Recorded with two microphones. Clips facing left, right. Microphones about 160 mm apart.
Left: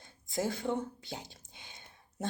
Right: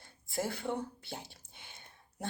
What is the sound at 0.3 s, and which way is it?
Speech, 20° left (ahead or behind).